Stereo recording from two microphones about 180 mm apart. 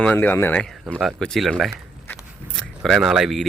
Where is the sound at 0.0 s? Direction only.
10° left (ahead or behind).